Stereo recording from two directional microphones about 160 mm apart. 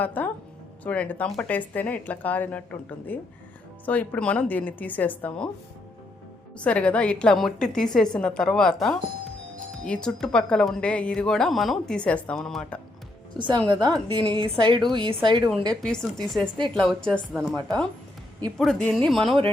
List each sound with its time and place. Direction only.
0.0 s speech: 10° left (ahead or behind)
6.6 s a woman's voice: 10° left (ahead or behind)
13.3 s a woman's voice: 30° right (ahead or behind)
15.7 s a woman's voice: 5° left (ahead or behind)